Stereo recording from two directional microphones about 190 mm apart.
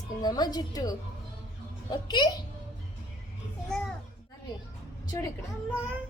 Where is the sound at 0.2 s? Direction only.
20° left (ahead or behind).